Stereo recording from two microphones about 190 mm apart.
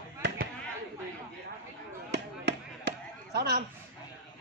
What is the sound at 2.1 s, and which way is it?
Chop, 60° right (ahead or behind).